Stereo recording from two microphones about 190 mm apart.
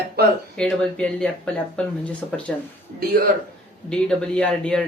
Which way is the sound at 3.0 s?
50° right (ahead or behind).